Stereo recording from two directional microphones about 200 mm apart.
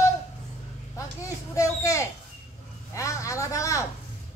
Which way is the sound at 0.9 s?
15° left (ahead or behind).